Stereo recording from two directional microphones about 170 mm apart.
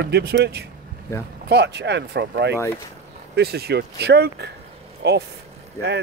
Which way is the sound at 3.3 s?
70° right (ahead or behind).